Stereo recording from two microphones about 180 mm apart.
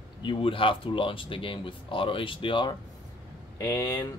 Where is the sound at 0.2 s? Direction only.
30° left (ahead or behind).